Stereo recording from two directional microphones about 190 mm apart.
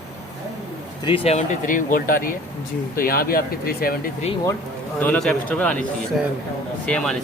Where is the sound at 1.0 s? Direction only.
30° left (ahead or behind); by 3.9 s 50° left (ahead or behind).